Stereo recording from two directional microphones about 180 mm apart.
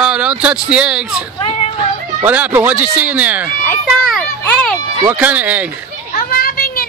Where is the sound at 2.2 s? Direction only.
10° right (ahead or behind).